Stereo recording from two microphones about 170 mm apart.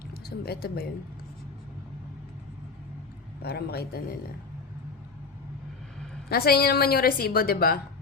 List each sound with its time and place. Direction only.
0.1 s speech: 65° left (ahead or behind)
3.4 s a man's voice: 70° left (ahead or behind)
6.2 s a woman's voice: 65° left (ahead or behind)